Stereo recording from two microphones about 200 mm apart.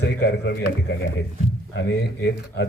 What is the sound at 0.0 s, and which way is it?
A man's voice, 60° left (ahead or behind).